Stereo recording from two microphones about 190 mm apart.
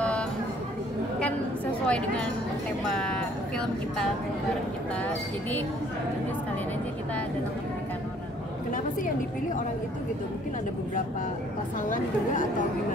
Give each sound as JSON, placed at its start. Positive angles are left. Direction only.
{"t": 1.9, "sound": "speech", "side_deg": 5}
{"t": 11.9, "sound": "speech", "side_deg": 45}